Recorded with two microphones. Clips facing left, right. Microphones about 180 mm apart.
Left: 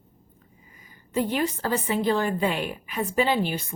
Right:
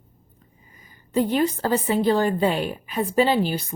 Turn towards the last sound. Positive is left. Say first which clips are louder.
# right 3 dB
turn(degrees=-35)  # may be behind; listen again after turning